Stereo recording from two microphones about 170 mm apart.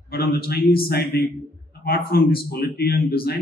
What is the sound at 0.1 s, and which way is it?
A man's voice, 65° left (ahead or behind).